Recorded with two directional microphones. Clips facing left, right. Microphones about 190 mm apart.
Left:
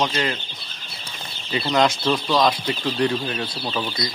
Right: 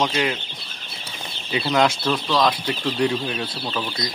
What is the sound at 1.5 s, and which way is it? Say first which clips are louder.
Speech: even; 5° right (ahead or behind).